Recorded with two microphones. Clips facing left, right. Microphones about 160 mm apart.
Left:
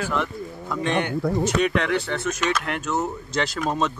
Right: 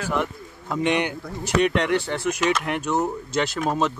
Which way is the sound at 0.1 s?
15° right (ahead or behind).